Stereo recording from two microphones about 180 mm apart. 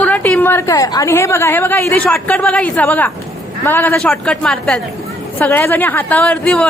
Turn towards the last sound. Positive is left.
turn(degrees=5)  # may be behind; listen again after turning